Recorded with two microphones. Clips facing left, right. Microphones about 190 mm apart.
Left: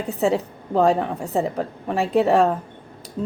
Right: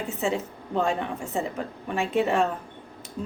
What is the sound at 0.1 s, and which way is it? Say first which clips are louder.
Speech: left 9 dB; 35° left (ahead or behind).